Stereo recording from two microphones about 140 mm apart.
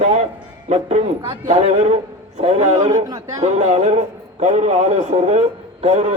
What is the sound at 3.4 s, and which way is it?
A man's voice, 55° right (ahead or behind).